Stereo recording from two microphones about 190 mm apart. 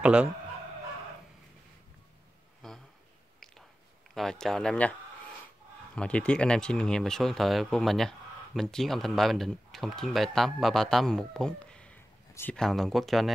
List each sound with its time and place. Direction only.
0.0 s speech: 5° right (ahead or behind)
2.6 s a sound: centre (ahead or behind)
4.1 s speech: 5° left (ahead or behind)
5.9 s speech: 5° left (ahead or behind)